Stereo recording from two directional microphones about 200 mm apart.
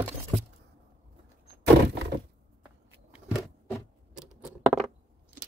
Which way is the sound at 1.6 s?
55° right (ahead or behind).